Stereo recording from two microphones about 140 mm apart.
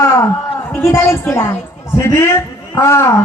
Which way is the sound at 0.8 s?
20° left (ahead or behind).